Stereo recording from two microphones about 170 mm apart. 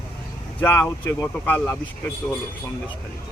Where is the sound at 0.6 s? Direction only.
15° left (ahead or behind).